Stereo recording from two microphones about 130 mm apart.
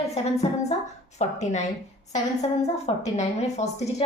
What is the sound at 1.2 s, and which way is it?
A woman's voice, 60° left (ahead or behind).